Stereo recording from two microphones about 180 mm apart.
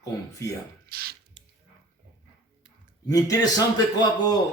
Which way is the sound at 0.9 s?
55° right (ahead or behind).